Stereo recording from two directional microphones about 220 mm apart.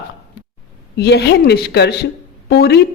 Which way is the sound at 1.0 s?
50° left (ahead or behind).